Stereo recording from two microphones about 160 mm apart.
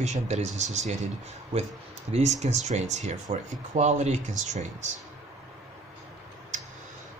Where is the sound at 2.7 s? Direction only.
45° right (ahead or behind).